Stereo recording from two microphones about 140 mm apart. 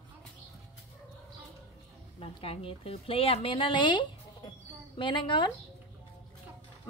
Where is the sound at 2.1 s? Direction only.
45° left (ahead or behind).